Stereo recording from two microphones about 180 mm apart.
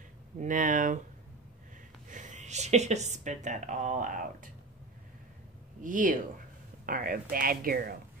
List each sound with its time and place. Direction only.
0.4 s speech: 45° right (ahead or behind)
2.0 s speech: 45° right (ahead or behind)
5.8 s speech: 45° right (ahead or behind)